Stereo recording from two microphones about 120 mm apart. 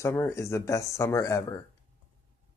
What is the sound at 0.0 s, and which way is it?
Speech, 20° left (ahead or behind).